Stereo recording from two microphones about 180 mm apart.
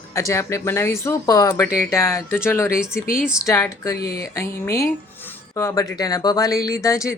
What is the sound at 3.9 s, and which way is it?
Speech, 60° left (ahead or behind).